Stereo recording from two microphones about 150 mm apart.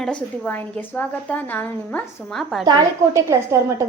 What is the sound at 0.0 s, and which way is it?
A woman's voice, 5° left (ahead or behind).